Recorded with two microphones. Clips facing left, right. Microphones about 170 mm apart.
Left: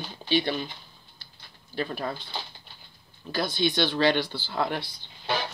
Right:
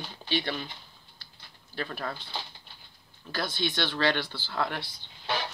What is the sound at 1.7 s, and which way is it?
Speech, 20° left (ahead or behind).